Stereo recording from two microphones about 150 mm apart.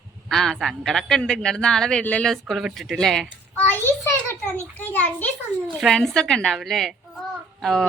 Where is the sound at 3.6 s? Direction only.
15° left (ahead or behind).